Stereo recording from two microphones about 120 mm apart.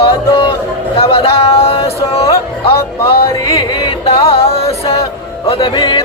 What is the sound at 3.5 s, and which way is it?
Music, 35° left (ahead or behind).